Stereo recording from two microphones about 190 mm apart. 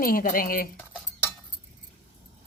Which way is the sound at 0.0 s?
50° left (ahead or behind).